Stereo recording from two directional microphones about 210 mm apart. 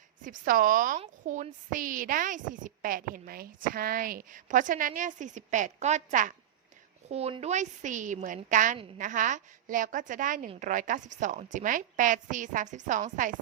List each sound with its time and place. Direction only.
0.2 s a woman's voice: 40° right (ahead or behind)